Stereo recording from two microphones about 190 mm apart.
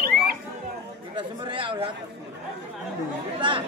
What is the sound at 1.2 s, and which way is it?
Speech, 25° right (ahead or behind).